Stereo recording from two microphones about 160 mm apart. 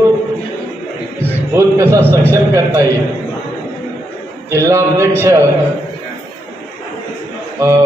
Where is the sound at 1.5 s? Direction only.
15° right (ahead or behind).